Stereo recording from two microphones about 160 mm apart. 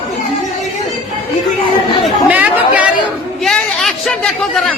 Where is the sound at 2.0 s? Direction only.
10° right (ahead or behind).